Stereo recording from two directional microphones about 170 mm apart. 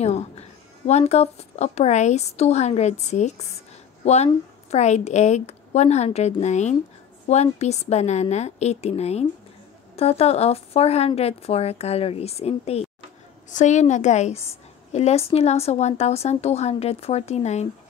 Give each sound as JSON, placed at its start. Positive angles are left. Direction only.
{"t": 0.0, "sound": "a woman's voice", "side_deg": 40}